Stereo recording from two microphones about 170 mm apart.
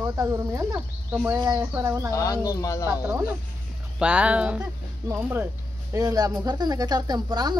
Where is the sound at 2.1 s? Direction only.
20° left (ahead or behind).